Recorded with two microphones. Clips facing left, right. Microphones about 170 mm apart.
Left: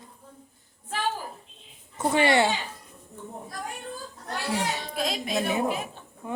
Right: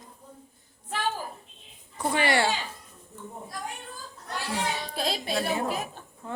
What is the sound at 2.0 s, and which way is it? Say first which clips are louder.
Speech: left 3 dB; 25° left (ahead or behind).